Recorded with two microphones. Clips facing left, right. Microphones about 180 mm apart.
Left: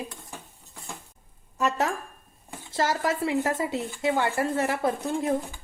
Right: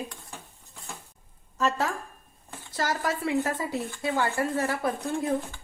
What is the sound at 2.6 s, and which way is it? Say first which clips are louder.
A woman's voice: left 3 dB; 25° left (ahead or behind).